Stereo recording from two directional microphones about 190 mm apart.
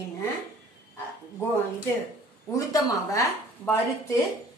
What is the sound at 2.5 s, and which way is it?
A woman's voice, 15° left (ahead or behind).